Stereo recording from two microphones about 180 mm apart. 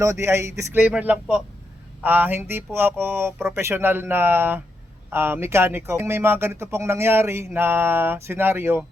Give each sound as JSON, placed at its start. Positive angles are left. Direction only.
{"t": 0.0, "sound": "speech", "side_deg": -15}